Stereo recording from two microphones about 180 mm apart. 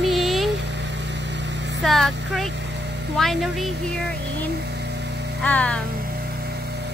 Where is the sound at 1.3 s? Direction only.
75° right (ahead or behind).